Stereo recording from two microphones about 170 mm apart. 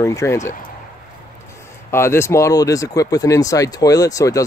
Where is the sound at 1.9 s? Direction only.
15° left (ahead or behind).